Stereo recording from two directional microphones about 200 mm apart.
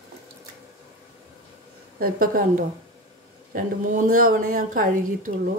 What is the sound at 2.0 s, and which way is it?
A woman's voice, 45° right (ahead or behind).